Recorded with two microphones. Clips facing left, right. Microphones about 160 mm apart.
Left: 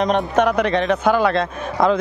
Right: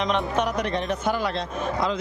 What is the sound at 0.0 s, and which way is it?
Speech, 45° left (ahead or behind).